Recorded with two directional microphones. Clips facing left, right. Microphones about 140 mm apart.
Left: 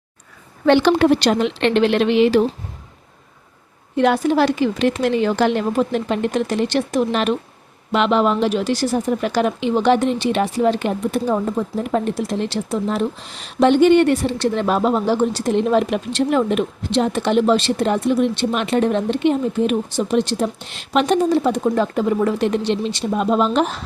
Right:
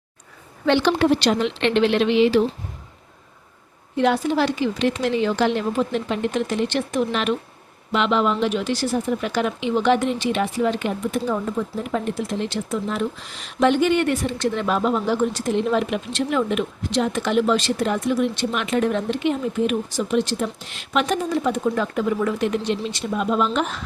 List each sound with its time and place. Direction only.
0.6 s a woman's voice: 50° left (ahead or behind)
3.9 s a woman's voice: 55° left (ahead or behind); by 23.8 s 35° left (ahead or behind)